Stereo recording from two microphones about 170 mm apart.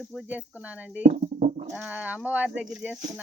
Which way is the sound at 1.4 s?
45° right (ahead or behind).